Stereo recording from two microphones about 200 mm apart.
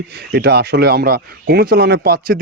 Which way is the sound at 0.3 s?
50° right (ahead or behind).